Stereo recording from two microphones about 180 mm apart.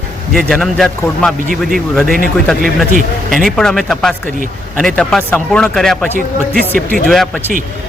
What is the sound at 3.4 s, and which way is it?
Speech, 5° left (ahead or behind).